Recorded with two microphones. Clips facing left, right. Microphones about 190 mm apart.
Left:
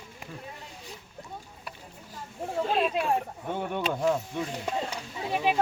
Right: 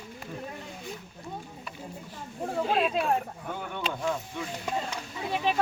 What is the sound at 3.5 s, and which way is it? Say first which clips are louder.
Speech: left 5 dB; 30° left (ahead or behind).